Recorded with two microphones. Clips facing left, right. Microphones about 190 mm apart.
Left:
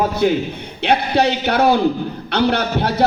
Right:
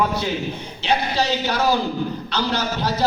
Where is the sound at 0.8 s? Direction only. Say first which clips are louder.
Left 5 dB; 60° left (ahead or behind).